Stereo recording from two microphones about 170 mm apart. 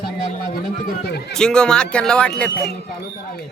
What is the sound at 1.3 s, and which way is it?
A man's voice, 5° left (ahead or behind).